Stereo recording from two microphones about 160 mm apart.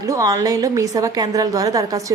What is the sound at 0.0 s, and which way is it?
A woman's voice, 20° right (ahead or behind).